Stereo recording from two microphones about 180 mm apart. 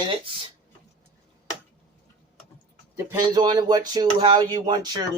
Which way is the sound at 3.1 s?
20° right (ahead or behind).